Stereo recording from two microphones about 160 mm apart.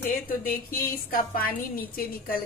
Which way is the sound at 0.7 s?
65° left (ahead or behind).